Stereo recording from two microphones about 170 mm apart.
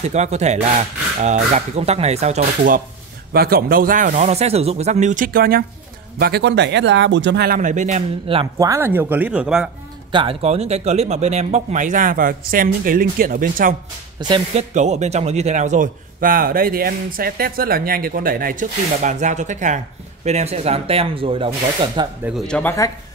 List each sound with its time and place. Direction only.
0.1 s speech: 40° right (ahead or behind)
3.3 s a man's voice: 60° right (ahead or behind); by 8.5 s 40° right (ahead or behind)
8.5 s speech: 15° right (ahead or behind)
10.1 s a man's voice: 35° right (ahead or behind); by 13.7 s 55° right (ahead or behind)
14.2 s speech: 25° right (ahead or behind)
14.6 s a man's voice: 45° right (ahead or behind); by 22.1 s 25° right (ahead or behind)
22.5 s speech: 10° left (ahead or behind)